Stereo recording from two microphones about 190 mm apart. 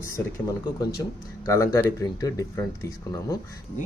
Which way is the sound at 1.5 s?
15° left (ahead or behind).